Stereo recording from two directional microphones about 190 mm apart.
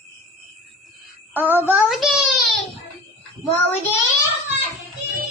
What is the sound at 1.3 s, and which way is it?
Speech, 10° right (ahead or behind).